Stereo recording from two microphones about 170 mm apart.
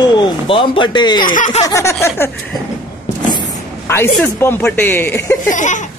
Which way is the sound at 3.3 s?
25° left (ahead or behind).